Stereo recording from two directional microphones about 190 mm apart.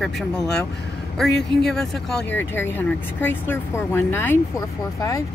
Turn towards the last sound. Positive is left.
turn(degrees=15)  # may be behind; listen again after turning